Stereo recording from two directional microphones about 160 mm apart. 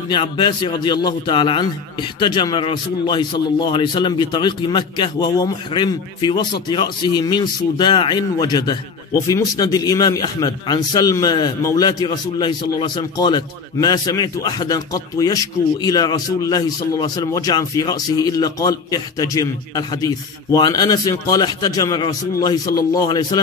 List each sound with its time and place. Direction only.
0.1 s a man's voice: 30° left (ahead or behind)